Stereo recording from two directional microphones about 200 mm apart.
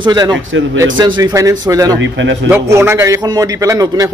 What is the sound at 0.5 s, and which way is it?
Speech, 70° right (ahead or behind).